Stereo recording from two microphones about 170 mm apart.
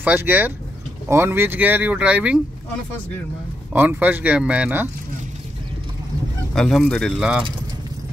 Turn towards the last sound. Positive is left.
turn(degrees=0)  # may be behind; listen again after turning